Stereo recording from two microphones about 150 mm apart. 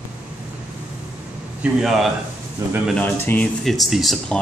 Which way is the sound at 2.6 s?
20° right (ahead or behind).